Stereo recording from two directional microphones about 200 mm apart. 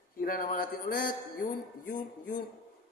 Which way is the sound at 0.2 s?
45° left (ahead or behind).